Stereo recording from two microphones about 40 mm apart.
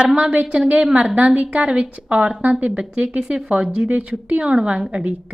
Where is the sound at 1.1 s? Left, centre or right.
Right.